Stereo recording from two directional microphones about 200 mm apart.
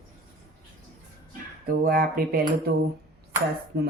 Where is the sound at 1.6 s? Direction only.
45° right (ahead or behind).